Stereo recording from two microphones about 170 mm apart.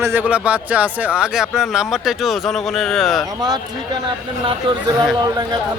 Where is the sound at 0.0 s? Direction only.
10° right (ahead or behind).